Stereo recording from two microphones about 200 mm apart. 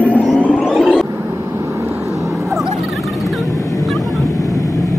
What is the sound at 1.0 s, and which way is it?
Vehicle, 15° right (ahead or behind).